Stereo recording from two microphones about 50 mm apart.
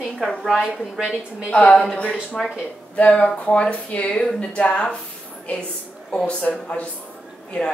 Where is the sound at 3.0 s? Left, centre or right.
Left.